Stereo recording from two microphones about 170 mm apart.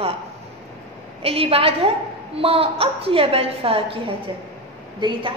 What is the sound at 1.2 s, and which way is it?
A woman's voice, 35° right (ahead or behind).